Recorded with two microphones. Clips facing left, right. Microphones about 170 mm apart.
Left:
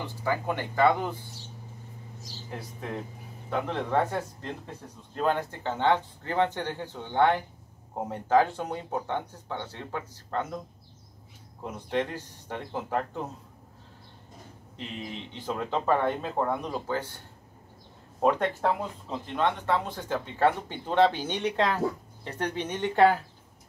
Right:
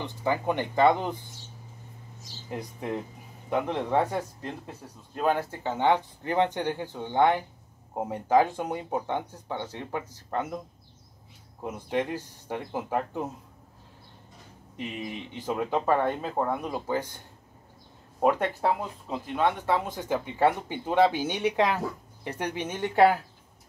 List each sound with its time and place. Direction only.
0.0 s speech: 20° right (ahead or behind)
2.5 s speech: 15° right (ahead or behind)
11.6 s speech: 10° right (ahead or behind)
14.8 s speech: 15° right (ahead or behind)
18.2 s speech: 10° right (ahead or behind)